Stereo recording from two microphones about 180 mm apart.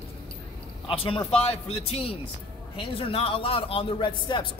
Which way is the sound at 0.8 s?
30° left (ahead or behind).